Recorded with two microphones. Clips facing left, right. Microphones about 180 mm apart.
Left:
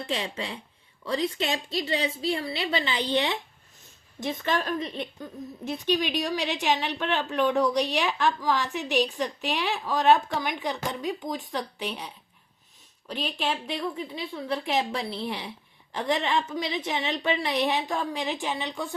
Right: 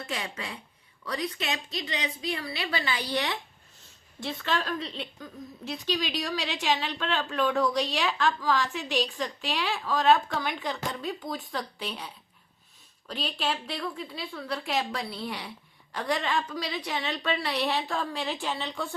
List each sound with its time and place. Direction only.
0.0 s a woman's voice: 30° left (ahead or behind)